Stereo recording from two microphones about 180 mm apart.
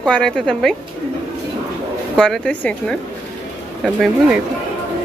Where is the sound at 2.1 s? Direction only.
5° left (ahead or behind).